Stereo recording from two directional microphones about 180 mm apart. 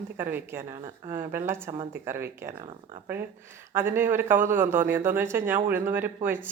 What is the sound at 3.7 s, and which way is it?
Speech, 15° right (ahead or behind).